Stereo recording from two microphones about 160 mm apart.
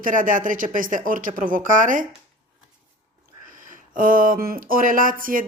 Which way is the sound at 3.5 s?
60° right (ahead or behind).